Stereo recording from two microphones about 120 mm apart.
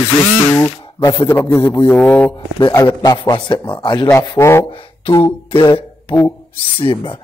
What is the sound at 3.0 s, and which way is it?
A man's voice, 35° left (ahead or behind).